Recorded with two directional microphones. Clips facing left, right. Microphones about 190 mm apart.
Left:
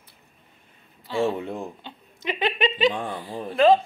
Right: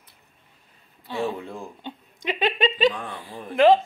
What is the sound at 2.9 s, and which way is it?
Speech, 30° left (ahead or behind).